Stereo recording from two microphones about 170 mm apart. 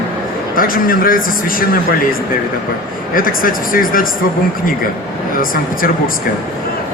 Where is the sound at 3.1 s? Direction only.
55° left (ahead or behind).